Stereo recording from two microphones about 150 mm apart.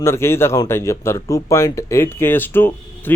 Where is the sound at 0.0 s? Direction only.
20° left (ahead or behind).